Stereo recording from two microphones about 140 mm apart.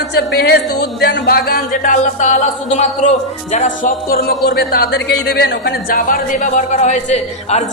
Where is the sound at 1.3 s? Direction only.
90° left.